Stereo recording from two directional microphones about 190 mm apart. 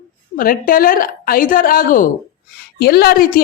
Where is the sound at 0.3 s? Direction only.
50° left (ahead or behind).